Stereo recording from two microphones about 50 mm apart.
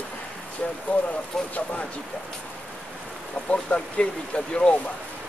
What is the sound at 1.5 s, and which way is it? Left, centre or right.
Speech, left.